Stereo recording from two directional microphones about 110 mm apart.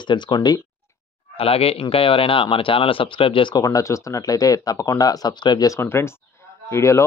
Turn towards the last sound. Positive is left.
turn(degrees=25)  # may be behind; listen again after turning